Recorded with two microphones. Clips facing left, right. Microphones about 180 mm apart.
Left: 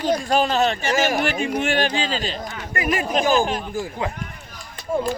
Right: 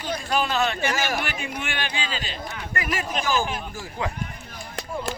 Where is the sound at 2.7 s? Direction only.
20° left (ahead or behind).